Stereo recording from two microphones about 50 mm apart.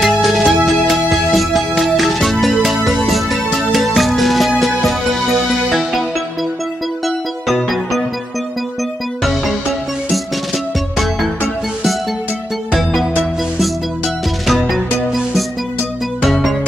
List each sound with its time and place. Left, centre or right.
0.0 s music: centre
7.4 s music: centre
12.7 s music: centre
14.5 s music: centre